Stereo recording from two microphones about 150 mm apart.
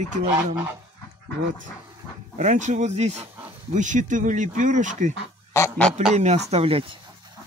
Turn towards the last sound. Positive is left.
turn(degrees=-40)  # may be behind; listen again after turning